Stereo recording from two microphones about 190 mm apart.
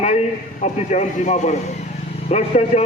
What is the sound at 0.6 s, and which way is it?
A man's voice, 40° left (ahead or behind).